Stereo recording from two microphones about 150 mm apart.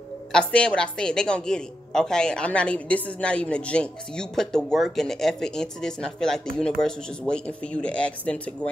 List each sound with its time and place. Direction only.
0.3 s a woman's voice: 5° left (ahead or behind)